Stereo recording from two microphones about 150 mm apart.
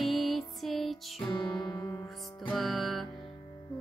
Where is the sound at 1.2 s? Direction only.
25° left (ahead or behind).